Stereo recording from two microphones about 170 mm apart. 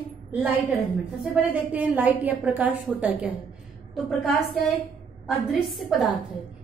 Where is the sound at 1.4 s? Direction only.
10° right (ahead or behind).